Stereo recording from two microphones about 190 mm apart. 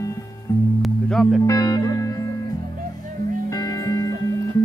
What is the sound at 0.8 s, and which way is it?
Music, 5° left (ahead or behind).